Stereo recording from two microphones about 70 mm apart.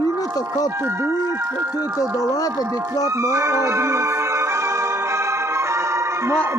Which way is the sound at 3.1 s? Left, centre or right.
Right.